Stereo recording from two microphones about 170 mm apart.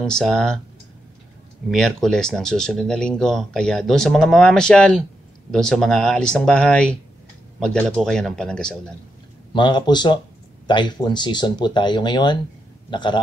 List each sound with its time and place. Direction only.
0.0 s speech: 5° left (ahead or behind)
1.7 s speech: centre (ahead or behind)
9.5 s speech: 25° left (ahead or behind)